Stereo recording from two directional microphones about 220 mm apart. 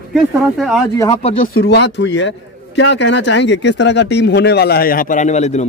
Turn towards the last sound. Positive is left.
turn(degrees=30)  # may be behind; listen again after turning